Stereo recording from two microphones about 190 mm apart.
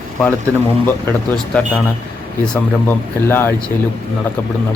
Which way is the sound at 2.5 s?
10° left (ahead or behind).